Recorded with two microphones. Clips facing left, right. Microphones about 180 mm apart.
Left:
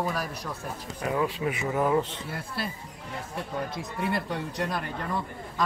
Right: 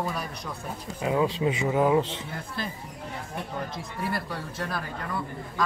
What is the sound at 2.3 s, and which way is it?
Speech, 5° left (ahead or behind).